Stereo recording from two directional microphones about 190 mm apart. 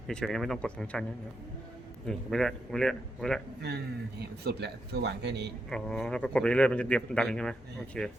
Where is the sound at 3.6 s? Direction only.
60° right (ahead or behind).